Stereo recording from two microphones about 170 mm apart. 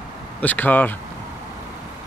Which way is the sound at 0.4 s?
10° left (ahead or behind).